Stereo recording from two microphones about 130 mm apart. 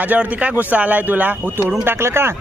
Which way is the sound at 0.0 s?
10° right (ahead or behind).